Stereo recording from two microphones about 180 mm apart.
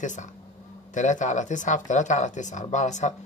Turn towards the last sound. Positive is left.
turn(degrees=40)  # may be behind; listen again after turning